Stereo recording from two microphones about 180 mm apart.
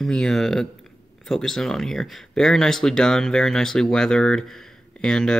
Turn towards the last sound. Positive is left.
turn(degrees=5)  # may be behind; listen again after turning